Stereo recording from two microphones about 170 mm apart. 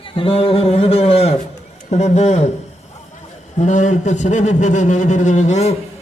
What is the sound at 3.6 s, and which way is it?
A man's voice, 45° left (ahead or behind).